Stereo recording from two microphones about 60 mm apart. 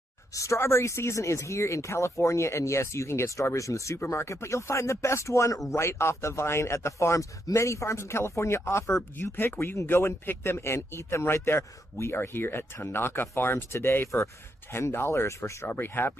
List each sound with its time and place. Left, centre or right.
0.3 s speech: left
4.0 s speech: left
9.2 s speech: left
15.6 s speech: left